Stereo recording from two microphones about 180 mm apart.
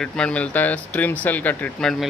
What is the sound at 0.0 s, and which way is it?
Speech, 5° left (ahead or behind).